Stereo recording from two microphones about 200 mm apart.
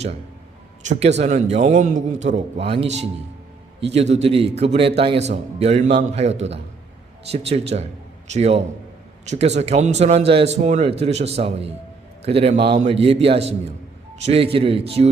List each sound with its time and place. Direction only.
0.9 s a man's voice: 35° right (ahead or behind)